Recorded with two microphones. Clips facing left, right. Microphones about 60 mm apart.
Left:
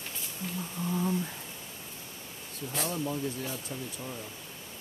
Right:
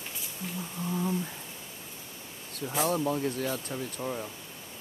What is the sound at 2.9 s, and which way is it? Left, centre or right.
Speech, right.